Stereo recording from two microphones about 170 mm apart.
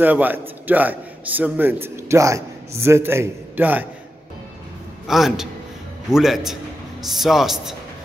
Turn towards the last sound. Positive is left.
turn(degrees=0)  # may be behind; listen again after turning